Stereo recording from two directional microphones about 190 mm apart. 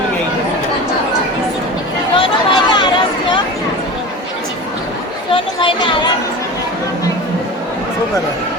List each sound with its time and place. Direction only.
2.1 s chatter: 25° left (ahead or behind)
5.3 s chatter: 25° left (ahead or behind)